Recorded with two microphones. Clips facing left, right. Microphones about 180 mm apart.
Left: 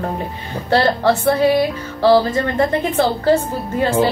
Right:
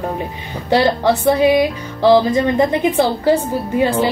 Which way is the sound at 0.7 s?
15° right (ahead or behind).